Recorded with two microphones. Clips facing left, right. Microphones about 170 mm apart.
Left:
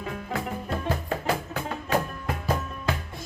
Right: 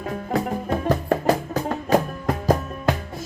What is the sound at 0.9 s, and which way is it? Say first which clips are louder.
Music: right 8 dB; 40° right (ahead or behind).